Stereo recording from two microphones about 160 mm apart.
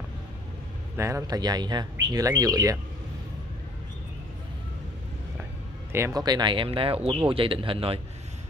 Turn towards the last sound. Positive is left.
turn(degrees=-35)  # may be behind; listen again after turning